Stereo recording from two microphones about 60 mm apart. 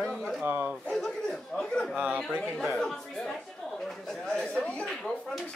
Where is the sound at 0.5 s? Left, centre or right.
Right.